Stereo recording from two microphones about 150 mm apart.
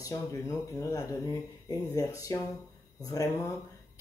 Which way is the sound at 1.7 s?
20° left (ahead or behind).